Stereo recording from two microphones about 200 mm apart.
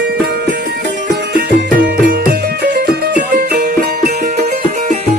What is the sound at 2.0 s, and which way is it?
Music, 50° right (ahead or behind).